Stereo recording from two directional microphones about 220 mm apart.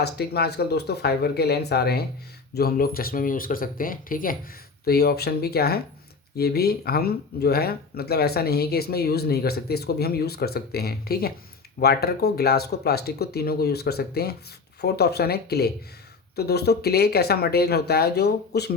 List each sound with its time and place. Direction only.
0.0 s speech: 50° left (ahead or behind)